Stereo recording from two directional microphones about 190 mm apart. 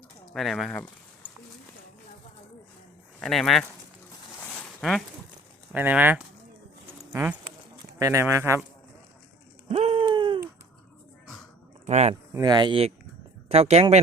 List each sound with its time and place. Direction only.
0.3 s speech: centre (ahead or behind)
3.2 s speech: centre (ahead or behind)
4.4 s a sound: 5° left (ahead or behind)
5.7 s speech: 10° right (ahead or behind)
7.0 s a sound: 15° right (ahead or behind)
7.9 s speech: 15° right (ahead or behind)
9.6 s a sound: 35° right (ahead or behind)
11.9 s speech: 35° right (ahead or behind)
12.3 s speech: 20° right (ahead or behind)